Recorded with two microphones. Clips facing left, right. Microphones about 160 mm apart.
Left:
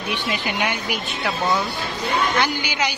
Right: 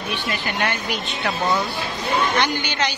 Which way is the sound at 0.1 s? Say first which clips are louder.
Left 2 dB; 15° left (ahead or behind).